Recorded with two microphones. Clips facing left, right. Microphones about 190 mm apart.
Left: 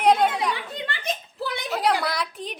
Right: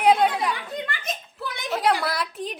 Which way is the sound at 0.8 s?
30° left (ahead or behind).